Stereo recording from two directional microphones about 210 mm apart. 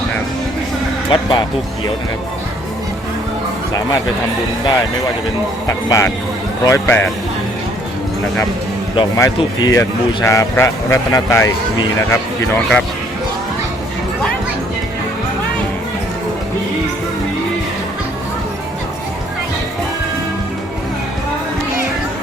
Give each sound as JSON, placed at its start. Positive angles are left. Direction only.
{"t": 1.1, "sound": "speech", "side_deg": 20}
{"t": 5.6, "sound": "speech", "side_deg": 15}
{"t": 9.0, "sound": "speech", "side_deg": 15}